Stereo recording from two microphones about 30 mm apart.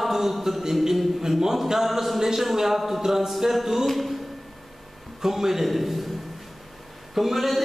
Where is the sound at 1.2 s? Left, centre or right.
Centre.